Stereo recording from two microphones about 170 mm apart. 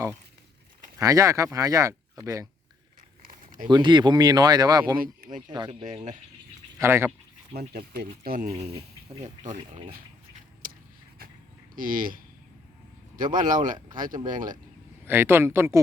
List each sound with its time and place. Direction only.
0.9 s speech: 20° right (ahead or behind)
3.2 s a sound: 50° right (ahead or behind)
3.7 s speech: 25° right (ahead or behind)
6.7 s speech: 15° right (ahead or behind)
7.7 s speech: 70° right (ahead or behind)
8.2 s speech: 55° right (ahead or behind)
8.4 s speech: 35° right (ahead or behind)
11.7 s speech: 55° right (ahead or behind)
15.0 s speech: 15° right (ahead or behind)